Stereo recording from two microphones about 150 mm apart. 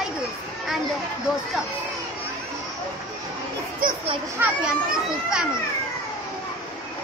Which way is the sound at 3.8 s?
70° right (ahead or behind).